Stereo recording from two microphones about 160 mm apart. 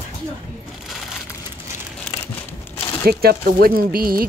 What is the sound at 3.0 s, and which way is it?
Speech, 70° right (ahead or behind).